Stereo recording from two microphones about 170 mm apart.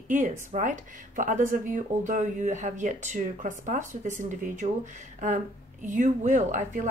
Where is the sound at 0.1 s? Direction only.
50° right (ahead or behind).